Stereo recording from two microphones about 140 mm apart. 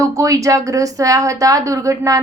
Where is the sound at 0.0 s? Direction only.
25° right (ahead or behind).